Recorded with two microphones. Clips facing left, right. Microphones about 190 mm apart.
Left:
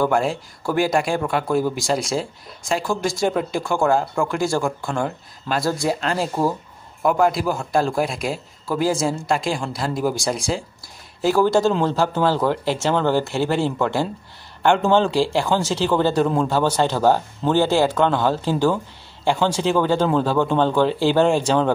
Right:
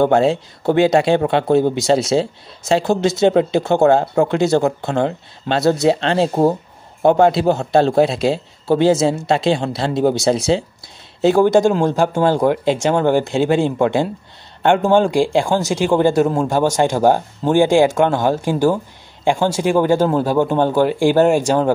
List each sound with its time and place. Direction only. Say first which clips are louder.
0.0 s speech: right 6 dB; 25° right (ahead or behind); by 21.7 s 10° right (ahead or behind)